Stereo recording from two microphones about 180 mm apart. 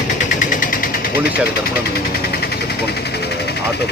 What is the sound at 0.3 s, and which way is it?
Engine, 45° left (ahead or behind).